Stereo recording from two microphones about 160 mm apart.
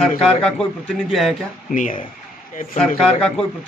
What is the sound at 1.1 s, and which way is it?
Speech, centre (ahead or behind).